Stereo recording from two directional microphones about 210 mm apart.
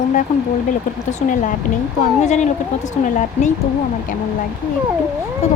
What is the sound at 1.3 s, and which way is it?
Speech, 40° left (ahead or behind).